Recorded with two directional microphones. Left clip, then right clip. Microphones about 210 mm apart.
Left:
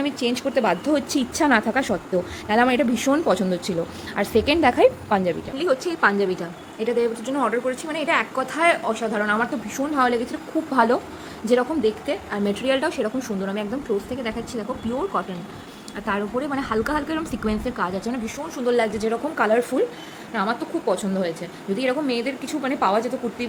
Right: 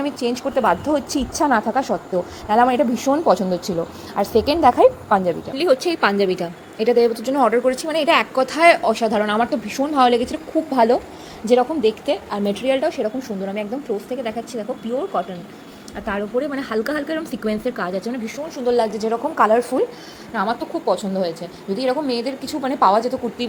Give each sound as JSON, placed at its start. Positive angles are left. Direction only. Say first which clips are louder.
{"t": 0.0, "sound": "a woman's voice", "louder": "right 1 dB", "side_deg": 0}
{"t": 1.3, "sound": "a woman's voice", "louder": "right 2 dB", "side_deg": 20}
{"t": 1.5, "sound": "a woman's voice", "louder": "right 2 dB", "side_deg": 5}
{"t": 5.5, "sound": "a woman's voice", "louder": "right 5 dB", "side_deg": -10}
{"t": 10.8, "sound": "a woman's voice", "louder": "right 2 dB", "side_deg": -5}
{"t": 15.1, "sound": "a woman's voice", "louder": "right 3 dB", "side_deg": 0}